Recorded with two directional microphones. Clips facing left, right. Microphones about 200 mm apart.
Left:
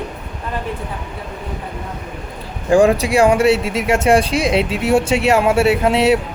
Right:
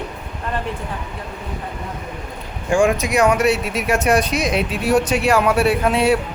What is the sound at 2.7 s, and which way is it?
Speech, 35° left (ahead or behind).